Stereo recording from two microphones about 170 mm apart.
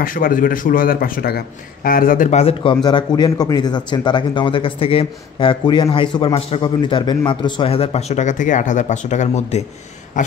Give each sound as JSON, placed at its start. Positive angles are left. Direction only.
{"t": 0.0, "sound": "a man's voice", "side_deg": 55}
{"t": 2.4, "sound": "speech", "side_deg": 30}
{"t": 10.2, "sound": "a sound", "side_deg": 50}